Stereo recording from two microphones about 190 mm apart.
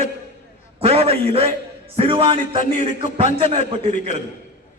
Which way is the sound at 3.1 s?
30° right (ahead or behind).